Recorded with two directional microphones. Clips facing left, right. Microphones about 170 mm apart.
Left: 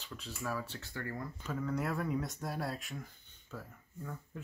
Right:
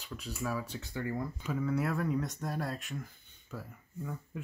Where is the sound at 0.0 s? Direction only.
10° right (ahead or behind).